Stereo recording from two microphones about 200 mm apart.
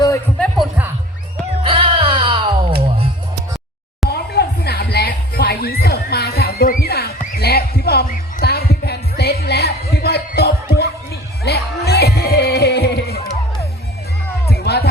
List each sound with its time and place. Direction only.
0.3 s music: centre (ahead or behind)
1.6 s music: 25° right (ahead or behind)
4.1 s music: 50° left (ahead or behind)
14.5 s music: 50° left (ahead or behind)